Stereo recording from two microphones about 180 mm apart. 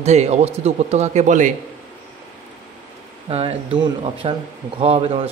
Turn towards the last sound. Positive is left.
turn(degrees=-30)  # may be behind; listen again after turning